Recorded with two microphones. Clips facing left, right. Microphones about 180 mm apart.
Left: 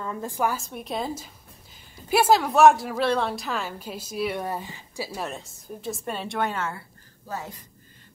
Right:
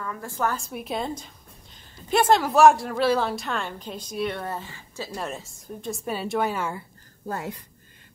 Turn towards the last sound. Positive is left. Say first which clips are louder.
# right 3 dB
turn(degrees=-60)  # may be behind; listen again after turning